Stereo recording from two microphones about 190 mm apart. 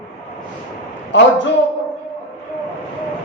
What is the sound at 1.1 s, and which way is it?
Speech, 70° left (ahead or behind).